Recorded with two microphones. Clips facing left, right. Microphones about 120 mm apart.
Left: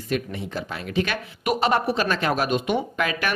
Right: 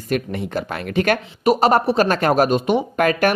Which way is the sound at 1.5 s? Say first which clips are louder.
Right 6 dB; 40° right (ahead or behind).